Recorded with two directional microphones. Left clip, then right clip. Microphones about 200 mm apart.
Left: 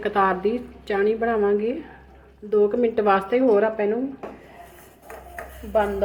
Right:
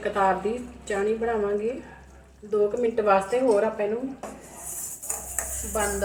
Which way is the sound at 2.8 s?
45° left (ahead or behind).